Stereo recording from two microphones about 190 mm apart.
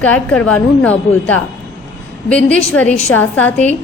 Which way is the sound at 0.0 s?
5° left (ahead or behind).